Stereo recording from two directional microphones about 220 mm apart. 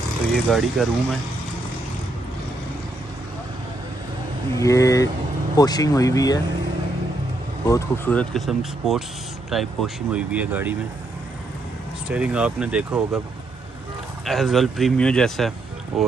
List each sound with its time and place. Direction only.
0.3 s speech: centre (ahead or behind)
4.6 s speech: 15° left (ahead or behind)
7.6 s speech: 10° left (ahead or behind); by 10.8 s 5° right (ahead or behind)
12.1 s speech: 5° right (ahead or behind)
14.2 s speech: centre (ahead or behind)